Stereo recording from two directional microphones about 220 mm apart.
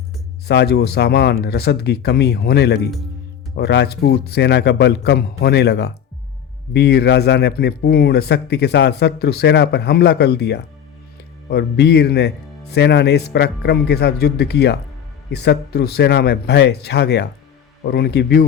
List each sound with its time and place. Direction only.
0.4 s a man's voice: 45° left (ahead or behind)